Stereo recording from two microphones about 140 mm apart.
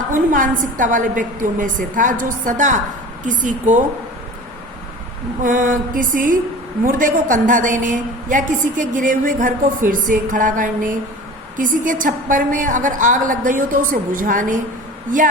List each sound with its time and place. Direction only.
0.1 s a woman's voice: 70° right (ahead or behind)
5.4 s a woman's voice: 70° right (ahead or behind)